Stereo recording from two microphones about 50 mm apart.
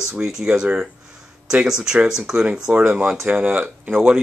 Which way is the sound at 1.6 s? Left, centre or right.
Centre.